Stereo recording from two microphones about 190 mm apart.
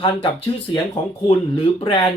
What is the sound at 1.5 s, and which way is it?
Speech, 30° left (ahead or behind).